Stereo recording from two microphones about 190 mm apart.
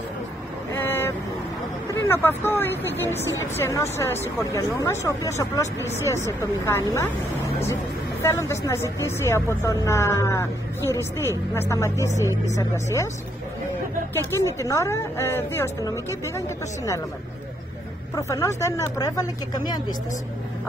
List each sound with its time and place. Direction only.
0.7 s vehicle: 10° left (ahead or behind)
2.0 s speech: 10° left (ahead or behind)
14.1 s speech: 15° left (ahead or behind)
18.1 s speech: 15° left (ahead or behind)